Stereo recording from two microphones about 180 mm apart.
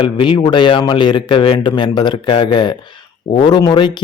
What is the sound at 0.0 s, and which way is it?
Speech, 25° left (ahead or behind).